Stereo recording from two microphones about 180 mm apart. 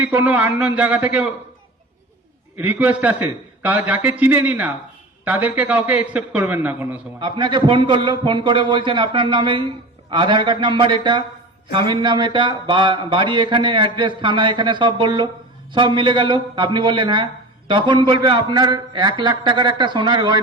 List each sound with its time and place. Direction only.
0.0 s a man's voice: 10° right (ahead or behind)
2.6 s a man's voice: 10° right (ahead or behind)
7.2 s speech: 25° right (ahead or behind)